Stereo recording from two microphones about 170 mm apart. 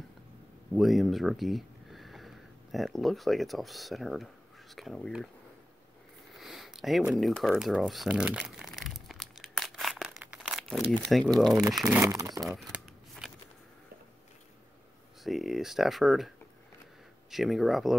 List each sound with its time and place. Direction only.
0.7 s speech: centre (ahead or behind)
6.3 s a sound: centre (ahead or behind)
11.3 s speech: centre (ahead or behind)
12.1 s speech: 20° right (ahead or behind)
12.4 s shuffling cards: centre (ahead or behind)
15.2 s speech: centre (ahead or behind)
17.3 s speech: centre (ahead or behind)